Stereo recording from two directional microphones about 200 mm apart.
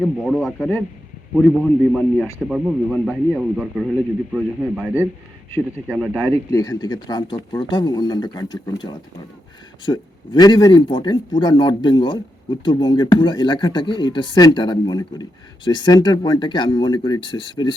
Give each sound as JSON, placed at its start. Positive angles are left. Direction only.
{"t": 0.0, "sound": "speech", "side_deg": 0}
{"t": 6.5, "sound": "speech", "side_deg": 15}